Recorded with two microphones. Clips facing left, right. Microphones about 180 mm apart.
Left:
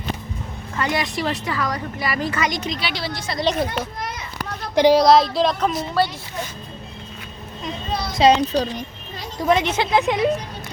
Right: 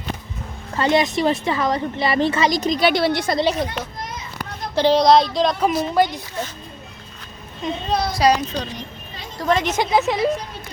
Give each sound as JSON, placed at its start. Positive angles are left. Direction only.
{"t": 0.8, "sound": "a child's voice", "side_deg": -25}
{"t": 3.4, "sound": "speech", "side_deg": 0}
{"t": 4.7, "sound": "speech", "side_deg": 15}
{"t": 5.7, "sound": "a woman's voice", "side_deg": -15}
{"t": 8.1, "sound": "a child's voice", "side_deg": 25}
{"t": 9.4, "sound": "a woman's voice", "side_deg": 5}
{"t": 9.6, "sound": "speech", "side_deg": -5}